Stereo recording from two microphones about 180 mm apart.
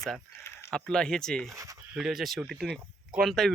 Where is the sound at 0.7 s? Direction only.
5° left (ahead or behind).